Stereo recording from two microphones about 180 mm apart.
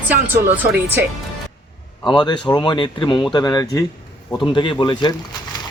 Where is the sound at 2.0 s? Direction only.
25° left (ahead or behind).